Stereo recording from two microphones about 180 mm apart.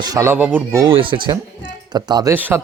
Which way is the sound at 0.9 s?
30° right (ahead or behind).